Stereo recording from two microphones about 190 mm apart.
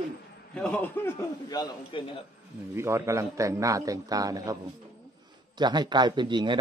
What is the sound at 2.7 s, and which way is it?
A man's voice, 15° right (ahead or behind).